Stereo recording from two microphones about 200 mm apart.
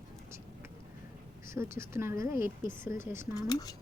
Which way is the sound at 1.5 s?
15° right (ahead or behind).